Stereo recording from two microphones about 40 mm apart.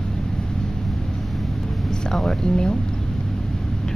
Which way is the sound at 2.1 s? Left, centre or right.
Centre.